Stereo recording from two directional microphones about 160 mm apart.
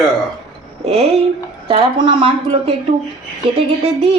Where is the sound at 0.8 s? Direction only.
40° right (ahead or behind).